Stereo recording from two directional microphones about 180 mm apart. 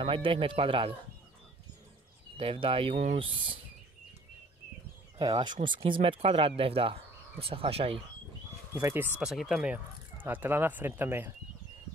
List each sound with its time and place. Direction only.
0.0 s speech: 30° right (ahead or behind)
2.3 s speech: 30° right (ahead or behind)
5.2 s speech: 25° right (ahead or behind)
8.7 s speech: 15° right (ahead or behind)
9.2 s speech: centre (ahead or behind)